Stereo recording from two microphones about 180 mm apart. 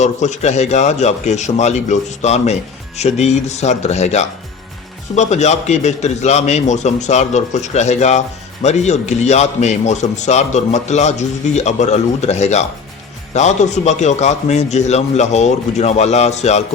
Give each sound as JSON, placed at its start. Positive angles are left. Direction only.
{"t": 0.0, "sound": "a man's voice", "side_deg": 40}